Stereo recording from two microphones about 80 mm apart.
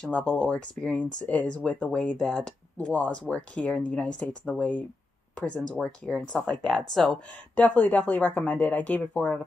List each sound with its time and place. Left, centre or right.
0.0 s speech: centre
7.1 s speech: centre